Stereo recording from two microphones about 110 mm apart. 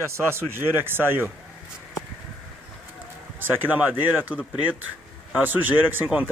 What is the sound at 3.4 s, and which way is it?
Speech, 15° right (ahead or behind).